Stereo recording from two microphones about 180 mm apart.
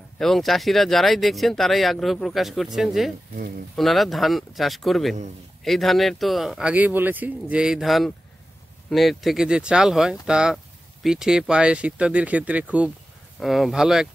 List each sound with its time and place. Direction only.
0.2 s speech: centre (ahead or behind)